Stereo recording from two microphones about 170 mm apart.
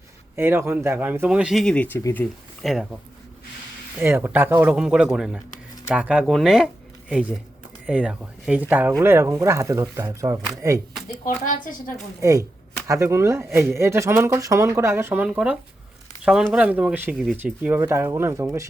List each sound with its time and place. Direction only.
0.3 s speech: 15° right (ahead or behind); by 2.6 s 10° left (ahead or behind)
2.6 s speech: centre (ahead or behind)
4.0 s speech: 15° right (ahead or behind)
11.3 s speech: 50° left (ahead or behind)
12.2 s speech: 20° right (ahead or behind)